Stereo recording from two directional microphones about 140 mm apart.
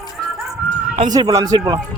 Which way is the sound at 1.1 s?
25° right (ahead or behind).